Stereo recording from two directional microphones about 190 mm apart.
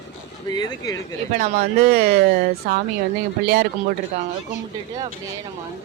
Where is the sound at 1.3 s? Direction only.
50° right (ahead or behind).